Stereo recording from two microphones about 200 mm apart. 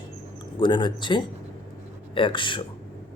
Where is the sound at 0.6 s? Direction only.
25° left (ahead or behind).